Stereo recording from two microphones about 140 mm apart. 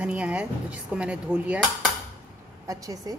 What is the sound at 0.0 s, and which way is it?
A woman's voice, 10° right (ahead or behind).